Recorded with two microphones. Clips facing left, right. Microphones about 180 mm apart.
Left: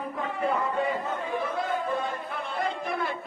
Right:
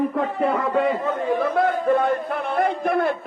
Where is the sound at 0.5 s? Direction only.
75° right (ahead or behind).